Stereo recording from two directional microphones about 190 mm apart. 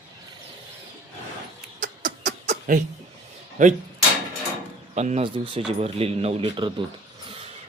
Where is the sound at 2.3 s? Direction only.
40° right (ahead or behind).